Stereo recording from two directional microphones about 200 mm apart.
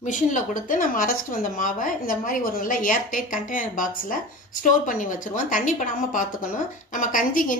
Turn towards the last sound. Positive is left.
turn(degrees=40)  # may be behind; listen again after turning